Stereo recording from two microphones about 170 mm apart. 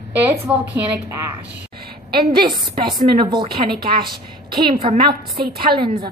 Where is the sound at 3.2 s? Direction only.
30° right (ahead or behind).